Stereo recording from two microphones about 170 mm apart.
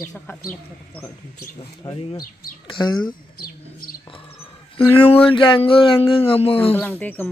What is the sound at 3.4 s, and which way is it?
Bird, 60° left (ahead or behind).